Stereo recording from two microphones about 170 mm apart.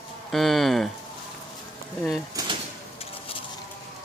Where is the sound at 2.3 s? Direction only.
30° right (ahead or behind).